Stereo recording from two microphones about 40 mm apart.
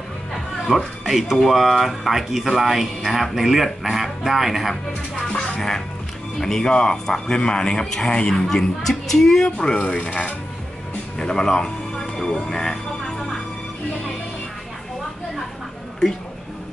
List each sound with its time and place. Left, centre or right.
0.7 s speech: centre
6.4 s a man's voice: centre
8.1 s a man's voice: left
8.5 s speech: centre
9.8 s speech: left
11.1 s music: centre